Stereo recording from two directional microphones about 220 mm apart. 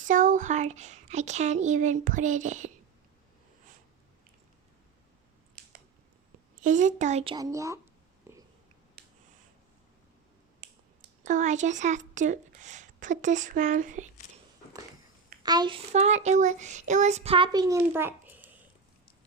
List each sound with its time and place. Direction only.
0.0 s speech: 35° right (ahead or behind)
6.6 s speech: 35° right (ahead or behind)
7.3 s speech: 15° right (ahead or behind)
8.3 s a sound: 10° right (ahead or behind)
11.2 s speech: 35° right (ahead or behind)
15.4 s a child's voice: 20° right (ahead or behind)
15.9 s speech: 30° right (ahead or behind); by 18.4 s 10° right (ahead or behind)